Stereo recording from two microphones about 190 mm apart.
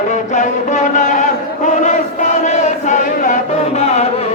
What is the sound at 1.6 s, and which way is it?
Chant, 40° left (ahead or behind).